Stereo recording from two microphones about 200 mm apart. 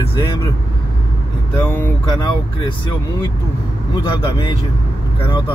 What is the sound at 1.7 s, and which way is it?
Speech, 10° left (ahead or behind).